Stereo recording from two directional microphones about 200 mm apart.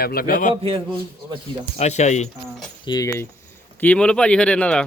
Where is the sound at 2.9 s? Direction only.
15° left (ahead or behind).